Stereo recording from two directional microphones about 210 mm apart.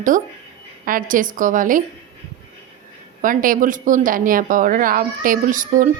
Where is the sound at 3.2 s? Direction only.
40° right (ahead or behind).